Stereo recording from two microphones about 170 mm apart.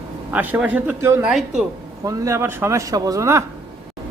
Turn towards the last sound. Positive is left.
turn(degrees=-15)  # may be behind; listen again after turning